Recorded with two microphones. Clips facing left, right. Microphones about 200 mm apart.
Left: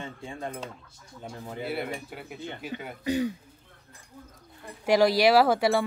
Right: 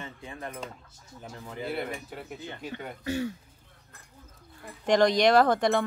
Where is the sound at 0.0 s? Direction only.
25° left (ahead or behind).